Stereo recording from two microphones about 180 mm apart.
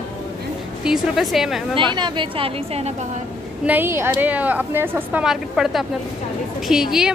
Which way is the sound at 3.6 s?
10° right (ahead or behind).